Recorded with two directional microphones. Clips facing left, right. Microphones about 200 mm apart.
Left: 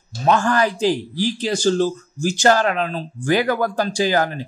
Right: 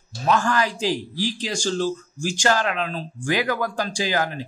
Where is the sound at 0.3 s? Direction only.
35° left (ahead or behind).